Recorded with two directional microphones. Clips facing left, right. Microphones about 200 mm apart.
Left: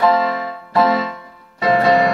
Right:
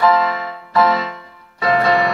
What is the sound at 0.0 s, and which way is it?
Music, 30° left (ahead or behind).